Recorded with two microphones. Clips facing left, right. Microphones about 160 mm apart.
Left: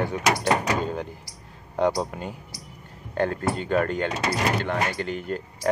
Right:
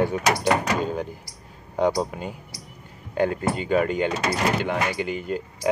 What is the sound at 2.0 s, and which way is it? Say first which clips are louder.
Speech: right 2 dB; 5° right (ahead or behind).